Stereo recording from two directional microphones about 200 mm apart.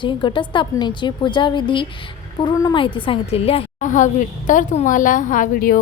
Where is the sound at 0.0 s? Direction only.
25° left (ahead or behind).